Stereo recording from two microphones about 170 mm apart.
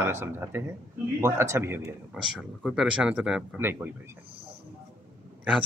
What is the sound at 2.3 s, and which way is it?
Speech, centre (ahead or behind).